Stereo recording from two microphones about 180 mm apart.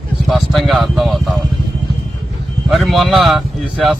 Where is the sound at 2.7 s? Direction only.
Centre (ahead or behind).